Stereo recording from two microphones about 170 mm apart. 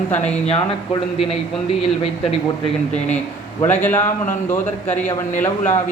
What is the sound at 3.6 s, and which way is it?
A man's voice, 10° left (ahead or behind).